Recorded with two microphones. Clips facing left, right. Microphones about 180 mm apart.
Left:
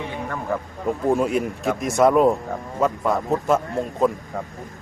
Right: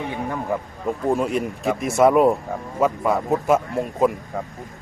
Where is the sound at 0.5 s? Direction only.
15° right (ahead or behind).